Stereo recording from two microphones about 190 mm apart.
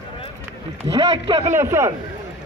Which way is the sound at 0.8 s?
30° right (ahead or behind).